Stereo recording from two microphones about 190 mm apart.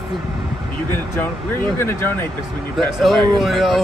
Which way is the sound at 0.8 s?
10° left (ahead or behind).